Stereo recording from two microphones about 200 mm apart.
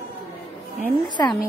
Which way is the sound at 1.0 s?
20° left (ahead or behind).